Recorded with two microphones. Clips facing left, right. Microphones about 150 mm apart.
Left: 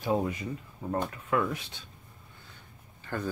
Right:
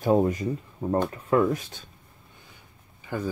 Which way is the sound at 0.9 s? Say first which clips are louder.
Right 6 dB; 35° right (ahead or behind).